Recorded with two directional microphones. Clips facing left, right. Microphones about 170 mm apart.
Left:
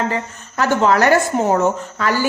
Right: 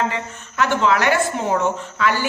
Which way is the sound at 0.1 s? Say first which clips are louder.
Left 4 dB; 40° left (ahead or behind).